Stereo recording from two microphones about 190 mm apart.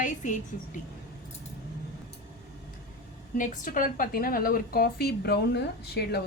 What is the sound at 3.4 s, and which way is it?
A woman's voice, 45° left (ahead or behind).